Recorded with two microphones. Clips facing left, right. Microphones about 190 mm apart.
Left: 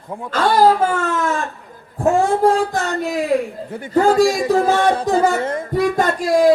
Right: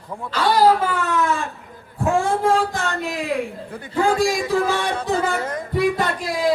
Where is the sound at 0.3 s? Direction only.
50° left (ahead or behind).